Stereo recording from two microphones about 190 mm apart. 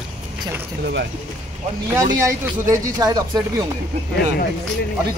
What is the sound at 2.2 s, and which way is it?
Speech, 15° right (ahead or behind).